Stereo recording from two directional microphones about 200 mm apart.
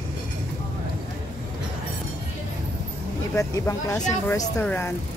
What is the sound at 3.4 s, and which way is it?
A woman's voice, 15° left (ahead or behind).